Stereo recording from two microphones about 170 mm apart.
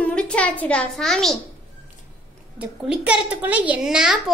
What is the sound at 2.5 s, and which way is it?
A child's voice, 5° right (ahead or behind).